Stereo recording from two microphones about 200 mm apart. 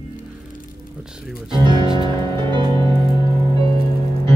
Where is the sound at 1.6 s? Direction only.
20° right (ahead or behind).